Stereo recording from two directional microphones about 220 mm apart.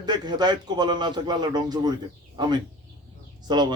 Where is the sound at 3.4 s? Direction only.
20° right (ahead or behind).